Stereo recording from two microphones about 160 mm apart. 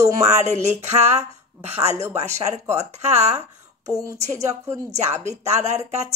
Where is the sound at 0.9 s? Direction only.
45° right (ahead or behind).